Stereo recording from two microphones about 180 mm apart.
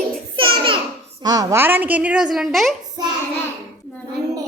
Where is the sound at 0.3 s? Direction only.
30° right (ahead or behind).